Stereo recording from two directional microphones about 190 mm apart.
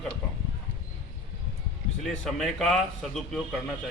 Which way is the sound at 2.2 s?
Centre (ahead or behind).